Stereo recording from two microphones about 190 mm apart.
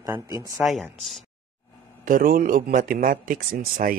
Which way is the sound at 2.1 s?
50° right (ahead or behind).